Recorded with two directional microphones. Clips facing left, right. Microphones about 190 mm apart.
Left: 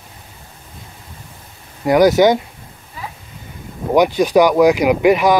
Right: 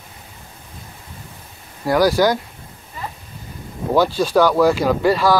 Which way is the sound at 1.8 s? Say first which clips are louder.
Left 4 dB; 20° left (ahead or behind).